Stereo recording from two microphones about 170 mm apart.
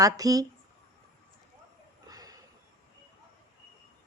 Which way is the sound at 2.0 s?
20° right (ahead or behind).